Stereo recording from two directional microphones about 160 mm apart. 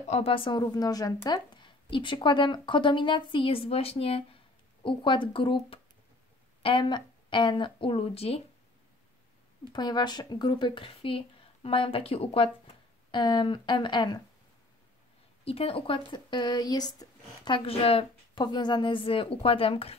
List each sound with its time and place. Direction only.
0.1 s a woman's voice: 35° left (ahead or behind)
9.7 s speech: 25° left (ahead or behind)
15.4 s speech: 35° left (ahead or behind)
17.6 s a woman's voice: 40° left (ahead or behind)